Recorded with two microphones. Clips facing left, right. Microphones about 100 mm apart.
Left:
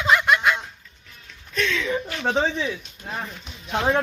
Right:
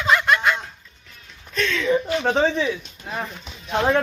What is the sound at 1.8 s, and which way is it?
Speech, 20° right (ahead or behind).